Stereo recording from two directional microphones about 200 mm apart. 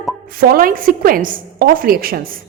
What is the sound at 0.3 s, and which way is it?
A woman's voice, 45° right (ahead or behind).